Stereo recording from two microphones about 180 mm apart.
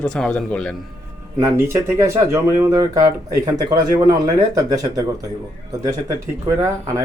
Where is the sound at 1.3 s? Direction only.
15° right (ahead or behind).